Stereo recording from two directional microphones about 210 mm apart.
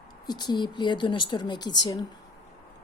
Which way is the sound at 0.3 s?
20° left (ahead or behind).